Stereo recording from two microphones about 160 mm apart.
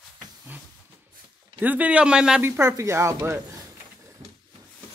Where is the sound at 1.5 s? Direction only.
10° right (ahead or behind).